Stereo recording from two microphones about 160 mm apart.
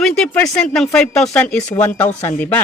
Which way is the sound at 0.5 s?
5° left (ahead or behind).